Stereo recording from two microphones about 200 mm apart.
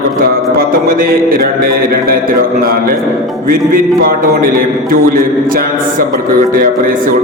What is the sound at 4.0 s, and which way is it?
A man's voice, 45° right (ahead or behind).